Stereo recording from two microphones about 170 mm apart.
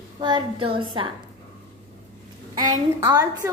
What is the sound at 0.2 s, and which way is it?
Speech, 30° right (ahead or behind).